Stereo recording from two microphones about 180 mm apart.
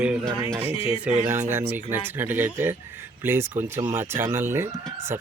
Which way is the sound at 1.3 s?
10° right (ahead or behind).